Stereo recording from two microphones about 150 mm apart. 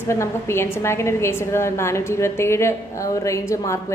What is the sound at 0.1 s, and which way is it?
A woman's voice, 15° left (ahead or behind).